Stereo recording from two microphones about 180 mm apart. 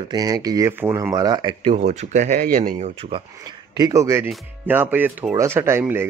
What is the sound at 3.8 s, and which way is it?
Speech, 20° right (ahead or behind).